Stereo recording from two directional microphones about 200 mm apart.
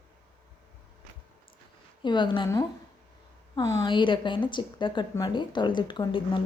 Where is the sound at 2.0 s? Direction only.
25° left (ahead or behind).